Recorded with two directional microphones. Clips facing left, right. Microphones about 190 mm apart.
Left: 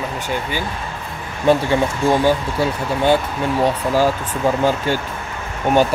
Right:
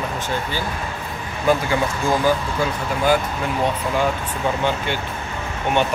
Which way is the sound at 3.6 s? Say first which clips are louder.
Left 4 dB; 35° left (ahead or behind).